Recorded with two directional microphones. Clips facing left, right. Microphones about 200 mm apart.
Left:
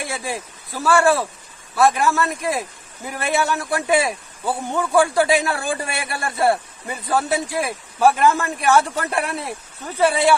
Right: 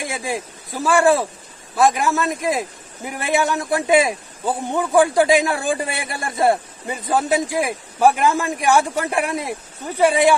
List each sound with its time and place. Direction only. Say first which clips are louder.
0.0 s a man's voice: right 2 dB; 15° right (ahead or behind)